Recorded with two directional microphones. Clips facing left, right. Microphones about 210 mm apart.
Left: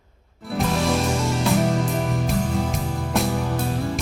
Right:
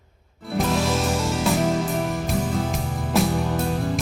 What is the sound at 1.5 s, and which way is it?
Music, centre (ahead or behind).